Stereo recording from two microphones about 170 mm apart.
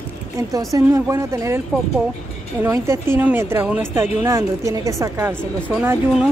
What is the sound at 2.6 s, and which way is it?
Speech, 15° right (ahead or behind).